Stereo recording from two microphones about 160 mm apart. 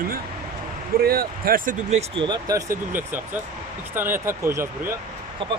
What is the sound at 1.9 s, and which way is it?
Speech, 40° right (ahead or behind).